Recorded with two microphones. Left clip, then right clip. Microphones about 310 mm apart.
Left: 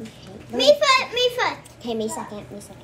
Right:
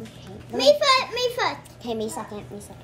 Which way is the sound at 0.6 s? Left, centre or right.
Right.